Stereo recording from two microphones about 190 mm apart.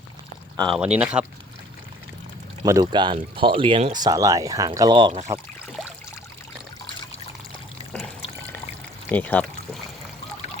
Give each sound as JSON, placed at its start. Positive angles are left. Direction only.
{"t": 0.8, "sound": "speech", "side_deg": -5}
{"t": 2.6, "sound": "speech", "side_deg": -20}
{"t": 4.0, "sound": "speech", "side_deg": -15}
{"t": 7.9, "sound": "pour", "side_deg": 5}
{"t": 9.0, "sound": "speech", "side_deg": 10}